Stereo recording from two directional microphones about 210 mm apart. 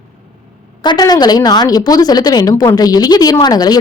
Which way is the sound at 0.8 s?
20° left (ahead or behind).